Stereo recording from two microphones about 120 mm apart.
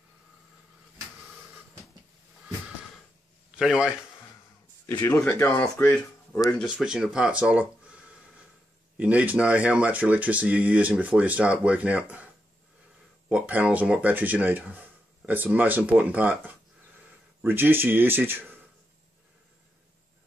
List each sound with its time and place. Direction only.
3.5 s a man's voice: 5° right (ahead or behind)
5.0 s speech: 20° left (ahead or behind)
6.4 s speech: 5° right (ahead or behind)
13.3 s speech: 10° right (ahead or behind)